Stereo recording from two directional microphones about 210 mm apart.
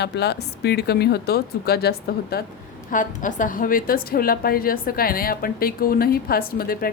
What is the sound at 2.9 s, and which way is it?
A woman's voice, 35° left (ahead or behind).